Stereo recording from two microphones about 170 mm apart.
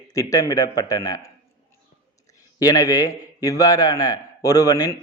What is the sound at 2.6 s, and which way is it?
A man's voice, 20° left (ahead or behind).